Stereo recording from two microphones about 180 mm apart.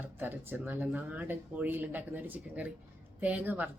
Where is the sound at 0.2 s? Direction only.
10° right (ahead or behind).